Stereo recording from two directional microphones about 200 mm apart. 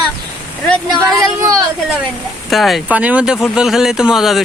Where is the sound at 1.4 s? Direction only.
15° right (ahead or behind).